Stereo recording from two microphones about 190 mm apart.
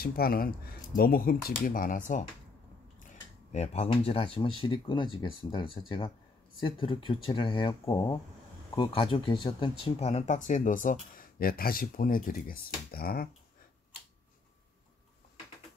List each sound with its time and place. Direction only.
0.0 s speech: 50° left (ahead or behind)
3.5 s speech: 35° left (ahead or behind); by 13.3 s 50° left (ahead or behind)